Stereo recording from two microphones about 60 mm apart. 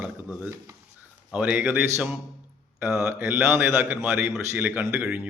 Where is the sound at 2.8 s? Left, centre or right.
Right.